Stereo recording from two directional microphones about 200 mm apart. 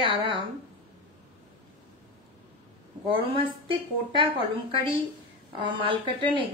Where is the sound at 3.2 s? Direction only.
25° right (ahead or behind).